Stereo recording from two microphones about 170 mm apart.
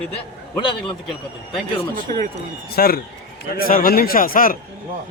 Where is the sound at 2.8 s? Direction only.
60° left (ahead or behind).